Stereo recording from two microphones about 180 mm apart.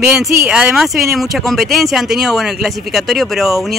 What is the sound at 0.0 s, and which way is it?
Speech, 5° right (ahead or behind).